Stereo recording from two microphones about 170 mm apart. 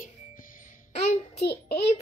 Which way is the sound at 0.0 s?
50° left (ahead or behind).